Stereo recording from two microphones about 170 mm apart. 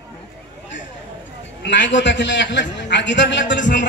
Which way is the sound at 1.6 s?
90° left.